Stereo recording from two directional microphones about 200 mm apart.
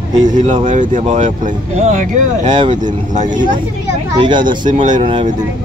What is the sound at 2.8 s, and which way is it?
Speech, 40° right (ahead or behind).